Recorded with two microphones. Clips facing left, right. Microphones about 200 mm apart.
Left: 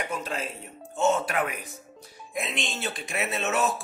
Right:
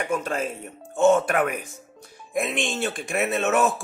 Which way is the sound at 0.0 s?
50° right (ahead or behind).